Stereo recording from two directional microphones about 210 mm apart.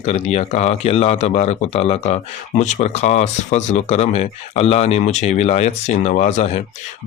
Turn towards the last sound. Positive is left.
turn(degrees=30)  # may be behind; listen again after turning